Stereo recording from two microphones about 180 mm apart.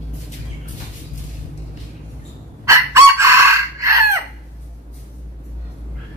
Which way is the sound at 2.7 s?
15° right (ahead or behind).